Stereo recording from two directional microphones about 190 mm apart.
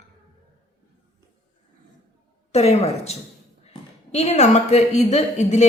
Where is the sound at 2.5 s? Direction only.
35° left (ahead or behind).